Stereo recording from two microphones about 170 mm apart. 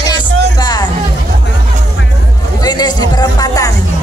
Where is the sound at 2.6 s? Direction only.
25° left (ahead or behind).